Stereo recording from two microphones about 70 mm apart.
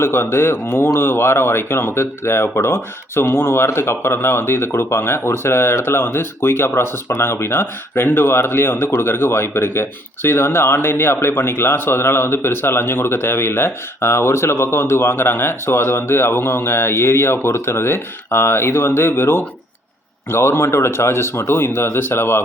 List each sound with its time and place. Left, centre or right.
0.0 s speech: left